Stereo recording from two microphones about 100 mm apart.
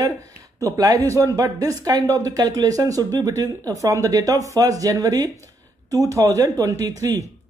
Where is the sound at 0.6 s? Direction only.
35° right (ahead or behind).